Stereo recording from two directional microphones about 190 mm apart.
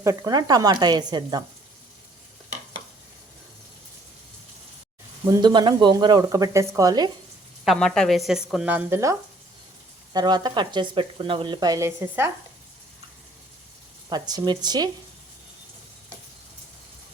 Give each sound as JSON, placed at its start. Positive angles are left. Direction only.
{"t": 0.0, "sound": "speech", "side_deg": -15}
{"t": 5.3, "sound": "speech", "side_deg": -25}
{"t": 7.6, "sound": "speech", "side_deg": 0}
{"t": 14.1, "sound": "speech", "side_deg": -20}